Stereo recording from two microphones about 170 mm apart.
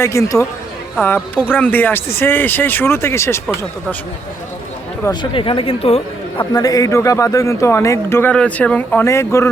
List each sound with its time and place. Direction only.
0.0 s a man's voice: 15° left (ahead or behind)
1.5 s a man's voice: 10° left (ahead or behind)
5.0 s speech: 30° left (ahead or behind)
6.4 s a man's voice: 20° left (ahead or behind)